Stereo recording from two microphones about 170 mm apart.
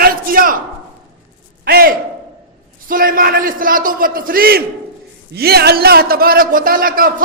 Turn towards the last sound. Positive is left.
turn(degrees=-55)  # may be behind; listen again after turning